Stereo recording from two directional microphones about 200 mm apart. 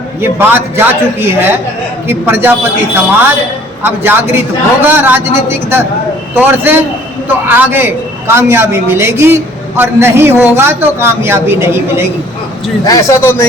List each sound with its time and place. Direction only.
0.2 s a man's voice: 10° right (ahead or behind)
12.8 s speech: 15° left (ahead or behind)